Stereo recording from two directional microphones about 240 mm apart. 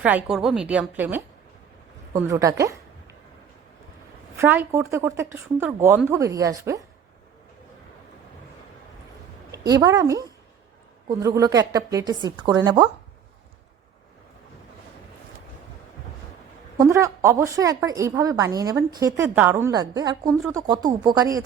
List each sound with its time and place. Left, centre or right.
0.0 s a woman's voice: centre
4.4 s a woman's voice: centre
9.5 s a woman's voice: centre
16.7 s a woman's voice: centre